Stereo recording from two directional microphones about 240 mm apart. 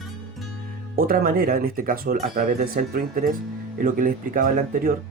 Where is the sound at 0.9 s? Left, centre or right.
Right.